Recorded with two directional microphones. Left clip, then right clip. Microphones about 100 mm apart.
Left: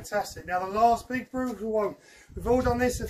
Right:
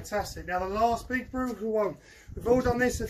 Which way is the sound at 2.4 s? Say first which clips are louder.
Even; 45° left (ahead or behind).